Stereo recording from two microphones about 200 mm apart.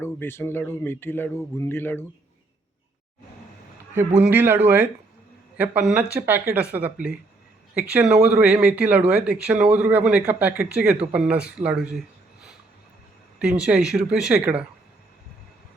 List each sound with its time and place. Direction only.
0.0 s speech: 10° left (ahead or behind)
4.2 s speech: 10° right (ahead or behind)
13.4 s speech: 5° right (ahead or behind)